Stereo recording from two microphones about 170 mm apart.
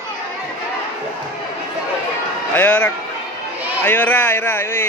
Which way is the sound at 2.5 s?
10° left (ahead or behind).